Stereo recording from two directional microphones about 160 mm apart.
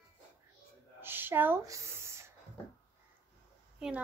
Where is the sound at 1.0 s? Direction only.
15° right (ahead or behind).